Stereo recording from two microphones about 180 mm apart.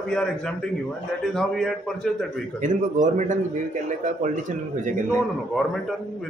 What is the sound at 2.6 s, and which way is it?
Speech, 45° right (ahead or behind).